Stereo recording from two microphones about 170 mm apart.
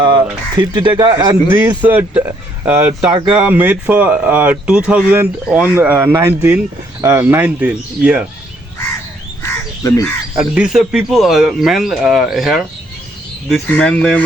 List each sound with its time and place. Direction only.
0.0 s speech: 25° right (ahead or behind)
1.8 s speech: 10° right (ahead or behind)
9.4 s crow: 20° left (ahead or behind)
10.3 s speech: 5° right (ahead or behind)